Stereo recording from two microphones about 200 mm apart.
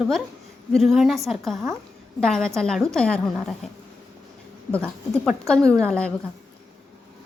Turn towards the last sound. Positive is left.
turn(degrees=5)  # may be behind; listen again after turning